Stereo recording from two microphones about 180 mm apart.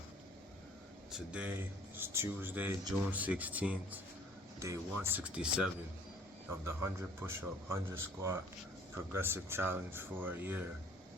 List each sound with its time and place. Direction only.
1.1 s speech: 5° right (ahead or behind)